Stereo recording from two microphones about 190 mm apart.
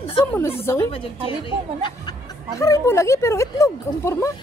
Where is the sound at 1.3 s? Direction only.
25° left (ahead or behind).